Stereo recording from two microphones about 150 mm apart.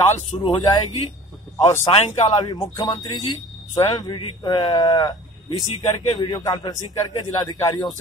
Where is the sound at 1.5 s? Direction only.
20° left (ahead or behind).